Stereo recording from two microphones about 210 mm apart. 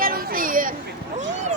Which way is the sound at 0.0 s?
45° right (ahead or behind).